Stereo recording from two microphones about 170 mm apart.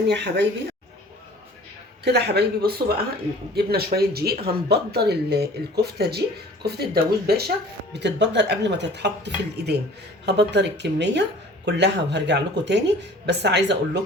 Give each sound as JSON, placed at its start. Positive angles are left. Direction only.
{"t": 0.1, "sound": "speech", "side_deg": -80}
{"t": 2.0, "sound": "speech", "side_deg": -75}
{"t": 7.9, "sound": "speech", "side_deg": -90}